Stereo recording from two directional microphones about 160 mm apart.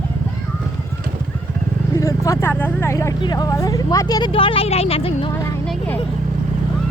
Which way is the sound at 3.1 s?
25° left (ahead or behind).